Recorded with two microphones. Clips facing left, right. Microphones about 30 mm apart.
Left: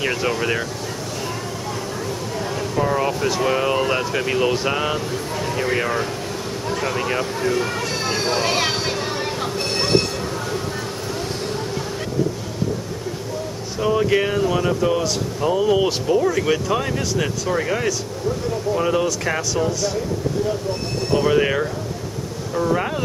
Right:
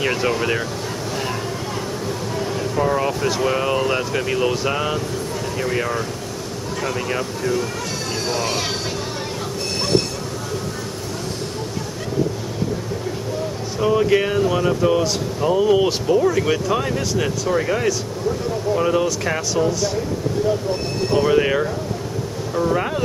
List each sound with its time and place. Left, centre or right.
0.0 s speech: centre
2.7 s speech: centre
8.1 s speech: left
13.7 s speech: centre
21.1 s speech: centre